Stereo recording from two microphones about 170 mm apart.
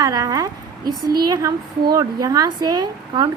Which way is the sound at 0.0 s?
20° right (ahead or behind).